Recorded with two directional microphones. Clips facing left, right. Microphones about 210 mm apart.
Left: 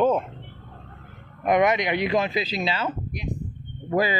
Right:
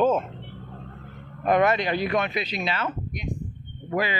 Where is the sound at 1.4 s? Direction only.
15° left (ahead or behind).